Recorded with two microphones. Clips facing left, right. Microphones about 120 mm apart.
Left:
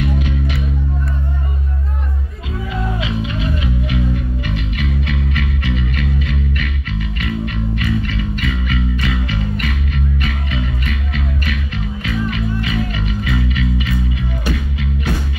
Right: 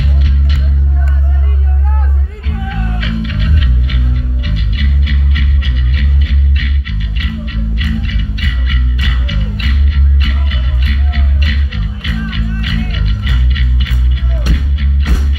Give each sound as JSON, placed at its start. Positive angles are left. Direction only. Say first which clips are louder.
{"t": 3.0, "sound": "music", "louder": "right 2 dB", "side_deg": 25}
{"t": 4.7, "sound": "music", "louder": "left 1 dB", "side_deg": 45}
{"t": 11.4, "sound": "music", "louder": "even", "side_deg": 40}